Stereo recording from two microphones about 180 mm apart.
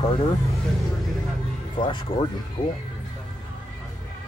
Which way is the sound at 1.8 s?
30° left (ahead or behind).